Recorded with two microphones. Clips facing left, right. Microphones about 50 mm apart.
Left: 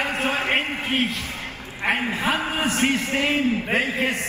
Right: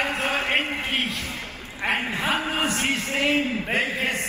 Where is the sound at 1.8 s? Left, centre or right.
Centre.